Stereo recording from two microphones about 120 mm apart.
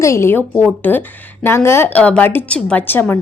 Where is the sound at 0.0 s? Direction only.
25° left (ahead or behind).